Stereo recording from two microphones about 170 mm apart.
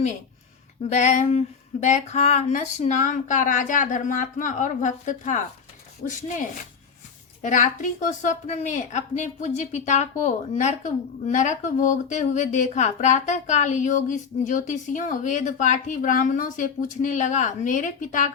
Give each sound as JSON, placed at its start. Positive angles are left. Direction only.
{"t": 0.9, "sound": "a woman's voice", "side_deg": 45}
{"t": 7.4, "sound": "a woman's voice", "side_deg": 45}